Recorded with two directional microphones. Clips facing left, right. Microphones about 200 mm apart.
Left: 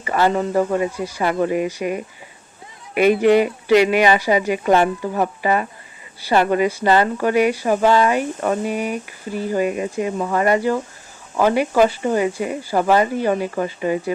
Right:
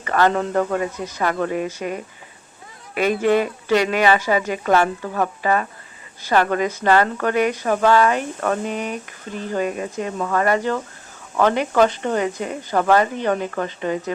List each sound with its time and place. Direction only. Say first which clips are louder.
0.0 s speech: even; 10° left (ahead or behind)